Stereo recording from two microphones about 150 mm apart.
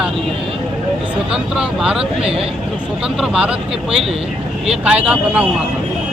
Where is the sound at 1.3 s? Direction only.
5° right (ahead or behind).